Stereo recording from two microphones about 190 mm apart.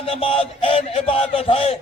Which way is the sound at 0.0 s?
30° left (ahead or behind).